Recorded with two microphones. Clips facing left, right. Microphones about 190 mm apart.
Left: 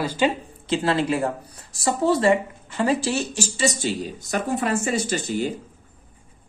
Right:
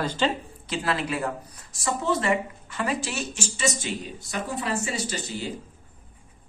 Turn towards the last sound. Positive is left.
turn(degrees=50)  # may be behind; listen again after turning